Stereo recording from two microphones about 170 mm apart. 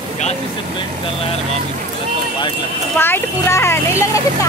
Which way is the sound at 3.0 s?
15° left (ahead or behind).